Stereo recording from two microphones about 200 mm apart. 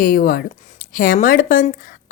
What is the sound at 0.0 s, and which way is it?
Speech, 45° left (ahead or behind).